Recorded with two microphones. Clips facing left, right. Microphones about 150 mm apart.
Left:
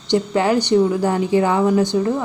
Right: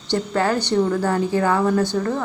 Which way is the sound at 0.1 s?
15° left (ahead or behind).